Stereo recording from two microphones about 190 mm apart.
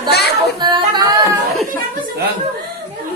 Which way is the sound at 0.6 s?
25° right (ahead or behind).